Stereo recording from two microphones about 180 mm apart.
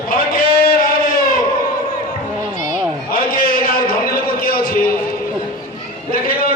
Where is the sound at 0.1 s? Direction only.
55° left (ahead or behind).